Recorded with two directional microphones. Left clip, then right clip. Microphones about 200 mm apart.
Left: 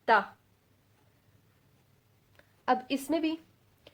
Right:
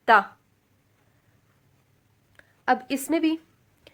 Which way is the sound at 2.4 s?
30° right (ahead or behind).